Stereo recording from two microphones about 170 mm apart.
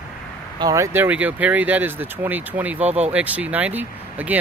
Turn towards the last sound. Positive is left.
turn(degrees=-10)  # may be behind; listen again after turning